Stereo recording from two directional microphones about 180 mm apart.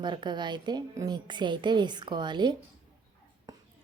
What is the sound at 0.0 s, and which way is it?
A woman's voice, 25° right (ahead or behind).